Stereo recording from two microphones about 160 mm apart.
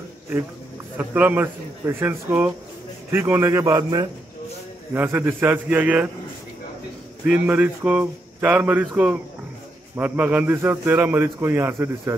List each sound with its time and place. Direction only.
0.9 s a man's voice: 10° right (ahead or behind)
4.9 s a man's voice: 10° right (ahead or behind)
7.2 s a man's voice: 10° right (ahead or behind)